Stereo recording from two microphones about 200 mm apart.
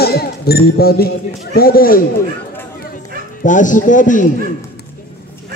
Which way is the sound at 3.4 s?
40° left (ahead or behind).